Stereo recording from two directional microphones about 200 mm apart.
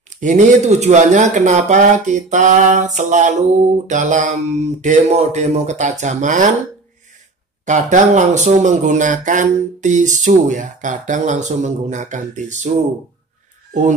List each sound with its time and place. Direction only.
0.1 s speech: 35° right (ahead or behind)
7.6 s speech: 35° right (ahead or behind)